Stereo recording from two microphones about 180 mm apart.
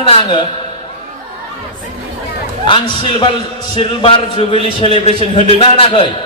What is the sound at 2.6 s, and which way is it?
A man's voice, 30° left (ahead or behind).